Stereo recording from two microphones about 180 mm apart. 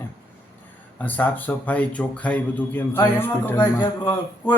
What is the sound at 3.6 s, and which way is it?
Speech, 25° left (ahead or behind).